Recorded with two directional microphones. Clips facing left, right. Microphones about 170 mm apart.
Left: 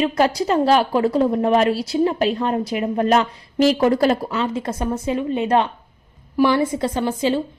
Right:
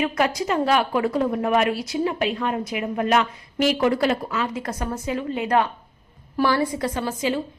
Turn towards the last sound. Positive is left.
turn(degrees=30)  # may be behind; listen again after turning